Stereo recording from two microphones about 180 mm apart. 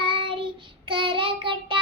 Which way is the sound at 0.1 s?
30° right (ahead or behind).